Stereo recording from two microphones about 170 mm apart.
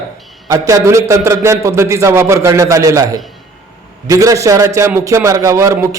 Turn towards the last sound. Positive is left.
turn(degrees=-15)  # may be behind; listen again after turning